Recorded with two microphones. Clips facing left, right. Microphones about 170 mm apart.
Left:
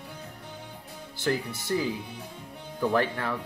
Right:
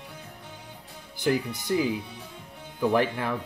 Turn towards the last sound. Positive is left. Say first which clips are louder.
# right 2 dB
turn(degrees=-15)  # may be behind; listen again after turning